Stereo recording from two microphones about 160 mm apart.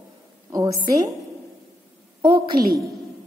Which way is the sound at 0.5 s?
20° right (ahead or behind).